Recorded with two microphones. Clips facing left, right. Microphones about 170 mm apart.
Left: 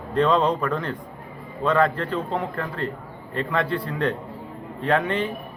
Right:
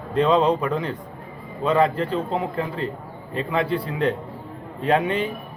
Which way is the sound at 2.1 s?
20° right (ahead or behind).